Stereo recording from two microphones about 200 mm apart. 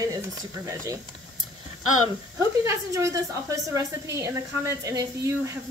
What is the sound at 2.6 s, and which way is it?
Speech, 15° right (ahead or behind).